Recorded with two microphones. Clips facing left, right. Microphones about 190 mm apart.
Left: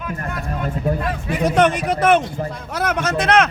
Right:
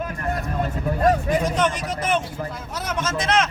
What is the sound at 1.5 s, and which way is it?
Speech, 65° left (ahead or behind).